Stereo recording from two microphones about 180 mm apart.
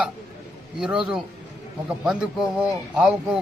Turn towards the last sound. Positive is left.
turn(degrees=-5)  # may be behind; listen again after turning